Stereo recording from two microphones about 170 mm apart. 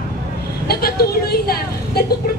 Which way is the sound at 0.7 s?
65° left (ahead or behind).